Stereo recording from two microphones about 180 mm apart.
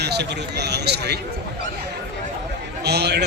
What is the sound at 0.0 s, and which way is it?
A man's voice, 65° right (ahead or behind).